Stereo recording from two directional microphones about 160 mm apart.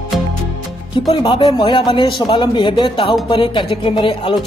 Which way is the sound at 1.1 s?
30° left (ahead or behind).